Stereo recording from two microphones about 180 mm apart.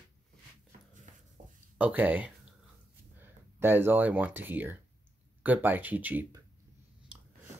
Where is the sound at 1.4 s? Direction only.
45° right (ahead or behind).